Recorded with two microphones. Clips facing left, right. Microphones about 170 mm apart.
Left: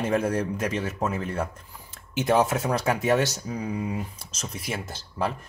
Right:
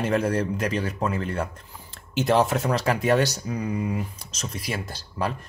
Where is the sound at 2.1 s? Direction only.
5° left (ahead or behind).